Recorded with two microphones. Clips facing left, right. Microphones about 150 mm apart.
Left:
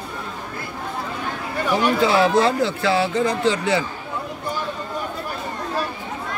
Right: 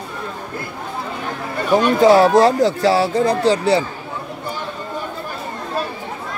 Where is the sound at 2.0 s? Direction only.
40° right (ahead or behind).